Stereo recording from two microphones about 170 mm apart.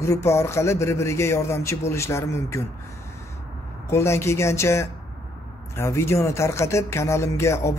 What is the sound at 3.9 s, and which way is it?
Speech, 15° left (ahead or behind).